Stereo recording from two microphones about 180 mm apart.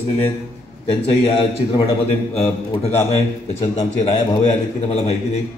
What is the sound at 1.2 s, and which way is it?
A man's voice, 30° left (ahead or behind).